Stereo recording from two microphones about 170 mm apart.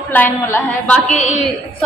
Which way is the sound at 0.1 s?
10° left (ahead or behind).